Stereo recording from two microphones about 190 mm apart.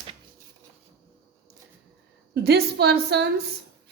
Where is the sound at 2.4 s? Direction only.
60° right (ahead or behind).